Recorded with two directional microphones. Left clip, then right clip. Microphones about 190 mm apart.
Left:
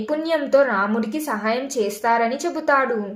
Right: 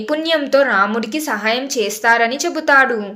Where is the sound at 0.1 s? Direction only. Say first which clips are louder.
Right 3 dB; 5° left (ahead or behind).